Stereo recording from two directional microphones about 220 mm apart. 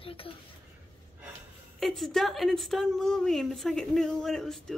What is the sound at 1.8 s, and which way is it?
A woman's voice, centre (ahead or behind).